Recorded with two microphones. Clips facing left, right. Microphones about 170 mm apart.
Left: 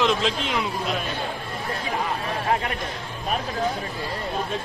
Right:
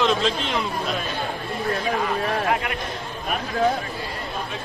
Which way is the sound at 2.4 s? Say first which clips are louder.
Right 1 dB; 30° left (ahead or behind).